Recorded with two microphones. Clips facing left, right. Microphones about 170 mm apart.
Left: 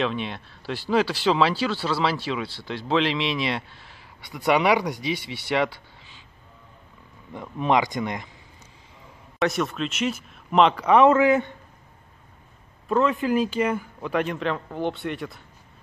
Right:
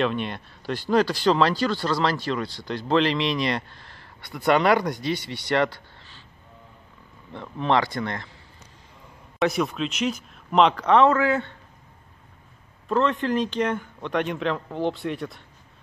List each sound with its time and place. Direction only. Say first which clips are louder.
0.0 s speech: right 2 dB; centre (ahead or behind)
7.3 s speech: left 1 dB; 10° left (ahead or behind)
9.4 s speech: right 1 dB; centre (ahead or behind); by 11.5 s 15° left (ahead or behind)
12.8 s speech: left 1 dB; 5° left (ahead or behind)